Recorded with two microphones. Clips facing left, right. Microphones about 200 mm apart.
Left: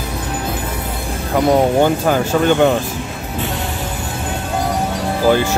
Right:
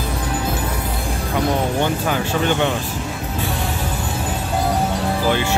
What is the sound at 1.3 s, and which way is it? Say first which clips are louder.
Speech: left 7 dB; 45° left (ahead or behind).